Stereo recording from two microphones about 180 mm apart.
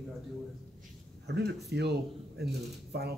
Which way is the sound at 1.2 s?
70° right (ahead or behind).